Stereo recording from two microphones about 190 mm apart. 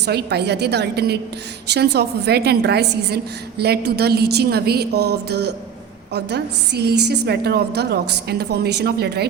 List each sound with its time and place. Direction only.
0.0 s a woman's voice: 60° right (ahead or behind)